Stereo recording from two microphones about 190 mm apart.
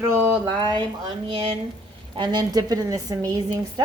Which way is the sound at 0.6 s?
25° right (ahead or behind).